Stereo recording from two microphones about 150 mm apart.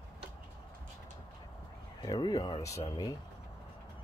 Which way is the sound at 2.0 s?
25° left (ahead or behind).